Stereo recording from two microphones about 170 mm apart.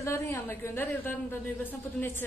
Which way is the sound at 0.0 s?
15° left (ahead or behind).